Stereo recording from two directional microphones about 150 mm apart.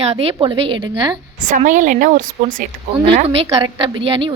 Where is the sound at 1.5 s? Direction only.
60° right (ahead or behind).